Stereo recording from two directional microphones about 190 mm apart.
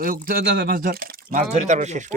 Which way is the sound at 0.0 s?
50° right (ahead or behind).